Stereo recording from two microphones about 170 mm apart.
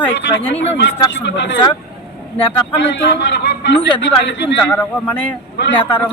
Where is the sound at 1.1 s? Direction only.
90° left.